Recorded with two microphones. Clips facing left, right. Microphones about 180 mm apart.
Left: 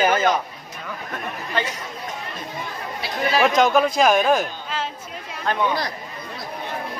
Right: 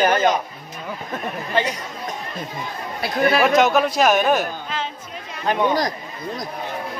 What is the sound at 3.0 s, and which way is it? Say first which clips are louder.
Speech: right 5 dB; 55° right (ahead or behind).